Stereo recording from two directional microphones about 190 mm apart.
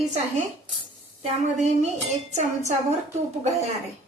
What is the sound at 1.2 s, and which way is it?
A woman's voice, 35° right (ahead or behind).